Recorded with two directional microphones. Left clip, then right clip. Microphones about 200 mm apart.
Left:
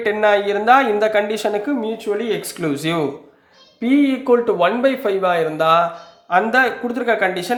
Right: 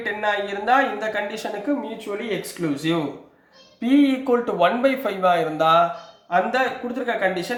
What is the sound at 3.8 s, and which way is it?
Speech, 20° left (ahead or behind).